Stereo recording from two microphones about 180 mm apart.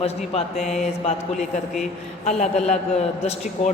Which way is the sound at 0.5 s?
Centre (ahead or behind).